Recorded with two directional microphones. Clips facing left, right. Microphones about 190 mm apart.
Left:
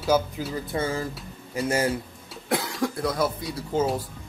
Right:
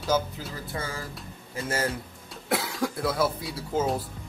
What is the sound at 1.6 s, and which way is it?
Speech, 15° left (ahead or behind).